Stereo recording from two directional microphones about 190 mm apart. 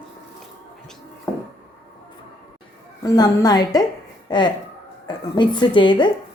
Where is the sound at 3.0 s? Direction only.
20° left (ahead or behind).